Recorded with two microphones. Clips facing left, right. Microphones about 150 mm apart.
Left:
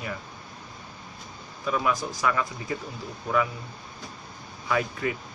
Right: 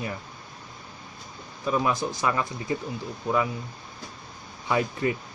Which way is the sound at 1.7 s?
25° right (ahead or behind).